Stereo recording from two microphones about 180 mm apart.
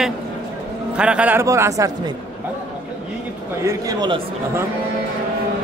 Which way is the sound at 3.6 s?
20° right (ahead or behind).